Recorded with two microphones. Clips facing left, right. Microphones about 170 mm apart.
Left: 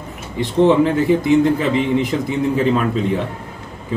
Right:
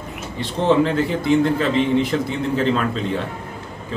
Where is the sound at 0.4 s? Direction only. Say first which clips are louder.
Left 4 dB; 15° left (ahead or behind).